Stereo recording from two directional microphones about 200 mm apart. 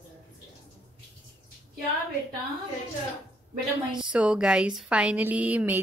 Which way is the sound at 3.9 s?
5° right (ahead or behind).